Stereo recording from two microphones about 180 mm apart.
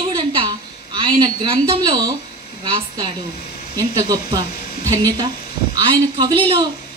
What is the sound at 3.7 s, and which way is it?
A woman's voice, 15° right (ahead or behind).